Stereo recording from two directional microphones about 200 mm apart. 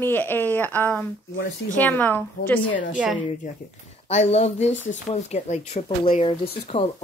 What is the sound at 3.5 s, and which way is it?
Speech, 40° left (ahead or behind).